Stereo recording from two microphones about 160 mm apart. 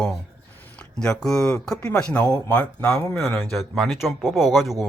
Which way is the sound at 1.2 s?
5° left (ahead or behind).